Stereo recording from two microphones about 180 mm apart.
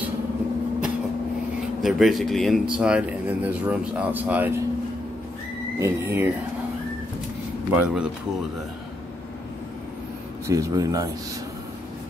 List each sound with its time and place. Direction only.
1.8 s speech: centre (ahead or behind)
5.8 s speech: 15° right (ahead or behind)
7.7 s speech: 5° right (ahead or behind)
10.4 s speech: 15° right (ahead or behind)